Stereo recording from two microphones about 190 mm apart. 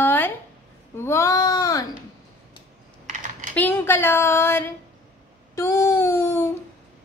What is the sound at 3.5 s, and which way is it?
A woman's voice, 10° left (ahead or behind).